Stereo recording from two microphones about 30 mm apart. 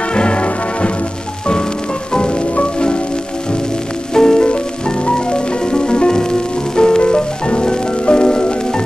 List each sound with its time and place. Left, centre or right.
0.1 s music: left
4.1 s music: left